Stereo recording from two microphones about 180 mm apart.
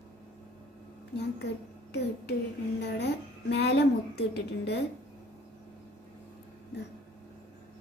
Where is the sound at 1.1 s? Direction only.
70° left (ahead or behind).